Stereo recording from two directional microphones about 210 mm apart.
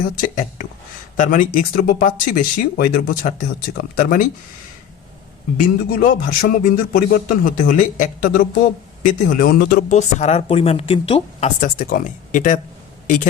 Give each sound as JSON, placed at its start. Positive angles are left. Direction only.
{"t": 0.2, "sound": "speech", "side_deg": 40}
{"t": 5.5, "sound": "speech", "side_deg": 45}
{"t": 11.8, "sound": "speech", "side_deg": 45}